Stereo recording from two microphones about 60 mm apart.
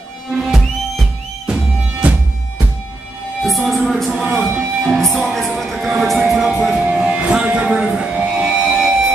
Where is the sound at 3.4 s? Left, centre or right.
Centre.